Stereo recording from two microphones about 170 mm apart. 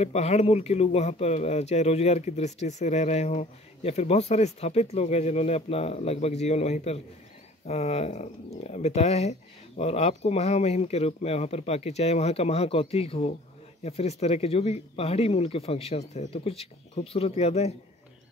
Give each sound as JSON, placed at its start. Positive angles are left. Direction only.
{"t": 0.0, "sound": "speech", "side_deg": 40}